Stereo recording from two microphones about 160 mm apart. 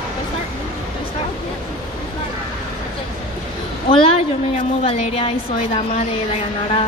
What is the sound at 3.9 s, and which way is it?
A woman's voice, 35° left (ahead or behind).